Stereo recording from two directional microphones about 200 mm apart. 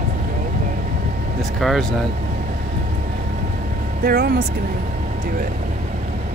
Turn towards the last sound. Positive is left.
turn(degrees=-55)  # may be behind; listen again after turning